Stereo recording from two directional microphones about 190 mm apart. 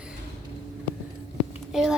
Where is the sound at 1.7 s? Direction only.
5° right (ahead or behind).